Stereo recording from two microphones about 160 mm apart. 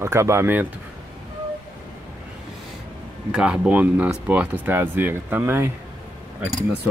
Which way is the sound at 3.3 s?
5° right (ahead or behind).